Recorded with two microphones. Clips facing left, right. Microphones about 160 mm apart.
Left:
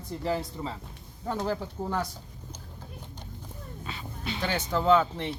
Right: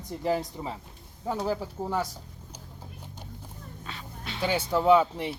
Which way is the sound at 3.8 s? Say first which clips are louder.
Left 4 dB; centre (ahead or behind).